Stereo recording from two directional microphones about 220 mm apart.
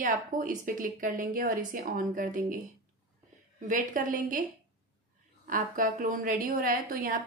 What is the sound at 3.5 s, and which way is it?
Speech, 35° right (ahead or behind).